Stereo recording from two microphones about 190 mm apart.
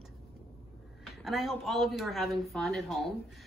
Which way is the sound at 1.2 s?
Centre (ahead or behind).